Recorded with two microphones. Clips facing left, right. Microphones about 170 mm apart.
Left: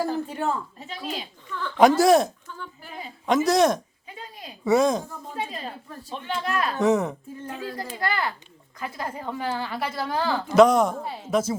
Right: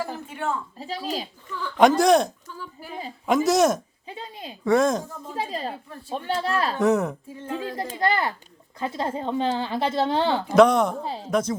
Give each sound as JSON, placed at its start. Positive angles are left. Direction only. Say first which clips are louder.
{"t": 0.0, "sound": "speech", "louder": "left 4 dB", "side_deg": 35}
{"t": 0.8, "sound": "speech", "louder": "right 4 dB", "side_deg": -35}
{"t": 1.5, "sound": "a woman's voice", "louder": "even", "side_deg": 0}
{"t": 4.0, "sound": "a sound", "louder": "right 4 dB", "side_deg": -30}
{"t": 4.6, "sound": "a woman's voice", "louder": "even", "side_deg": 0}
{"t": 5.4, "sound": "speech", "louder": "right 4 dB", "side_deg": -35}
{"t": 6.7, "sound": "a woman's voice", "louder": "left 1 dB", "side_deg": 0}
{"t": 7.9, "sound": "speech", "louder": "right 4 dB", "side_deg": -25}
{"t": 10.5, "sound": "a woman's voice", "louder": "left 1 dB", "side_deg": 0}